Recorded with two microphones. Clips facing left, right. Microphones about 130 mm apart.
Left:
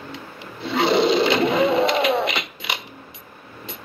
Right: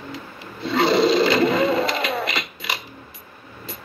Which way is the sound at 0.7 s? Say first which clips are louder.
Right 1 dB; 25° left (ahead or behind).